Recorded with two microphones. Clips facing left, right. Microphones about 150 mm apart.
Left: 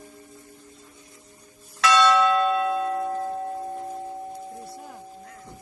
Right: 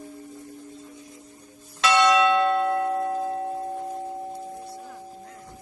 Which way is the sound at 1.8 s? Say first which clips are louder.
Even; 15° right (ahead or behind).